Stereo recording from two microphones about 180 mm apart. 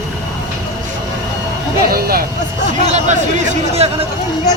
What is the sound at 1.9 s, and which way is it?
Speech, 55° right (ahead or behind).